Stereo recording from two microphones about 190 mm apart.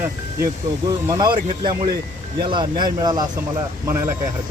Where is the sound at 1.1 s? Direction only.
20° right (ahead or behind).